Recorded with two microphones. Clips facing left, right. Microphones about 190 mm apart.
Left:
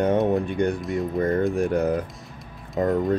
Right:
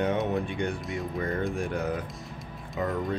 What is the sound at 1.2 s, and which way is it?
Speech, 40° left (ahead or behind).